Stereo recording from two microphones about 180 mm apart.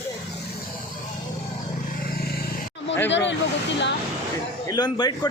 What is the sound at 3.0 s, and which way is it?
Speech, 80° left.